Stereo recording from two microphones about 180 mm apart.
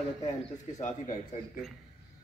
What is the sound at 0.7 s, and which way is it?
Speech, 45° left (ahead or behind).